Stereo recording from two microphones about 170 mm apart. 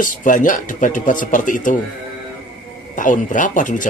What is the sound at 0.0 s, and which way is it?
Speech, 50° left (ahead or behind).